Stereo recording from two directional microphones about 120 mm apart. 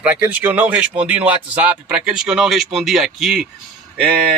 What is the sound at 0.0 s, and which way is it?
Speech, 15° right (ahead or behind).